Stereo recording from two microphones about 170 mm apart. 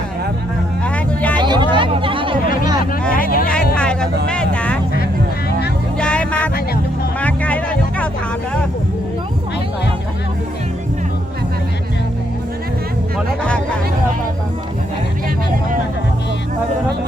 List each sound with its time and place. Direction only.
0.9 s vehicle: 10° left (ahead or behind)
1.4 s hubbub: 25° right (ahead or behind)
3.2 s a sound: 55° left (ahead or behind)
3.8 s a sound: 5° left (ahead or behind)
4.3 s vehicle: 5° left (ahead or behind)
6.0 s music: 5° left (ahead or behind)
13.1 s music: 5° left (ahead or behind)